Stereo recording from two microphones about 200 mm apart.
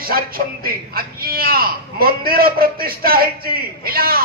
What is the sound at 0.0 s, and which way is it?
A man's voice, 45° right (ahead or behind).